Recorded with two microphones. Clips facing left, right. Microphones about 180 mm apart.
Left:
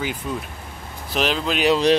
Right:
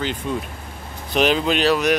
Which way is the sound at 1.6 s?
25° left (ahead or behind).